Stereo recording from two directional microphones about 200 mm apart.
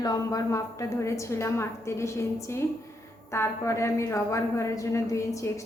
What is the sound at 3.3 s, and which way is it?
A woman's voice, 15° left (ahead or behind).